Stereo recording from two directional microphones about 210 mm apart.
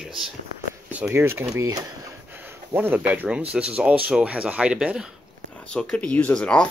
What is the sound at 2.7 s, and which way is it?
Speech, 10° right (ahead or behind).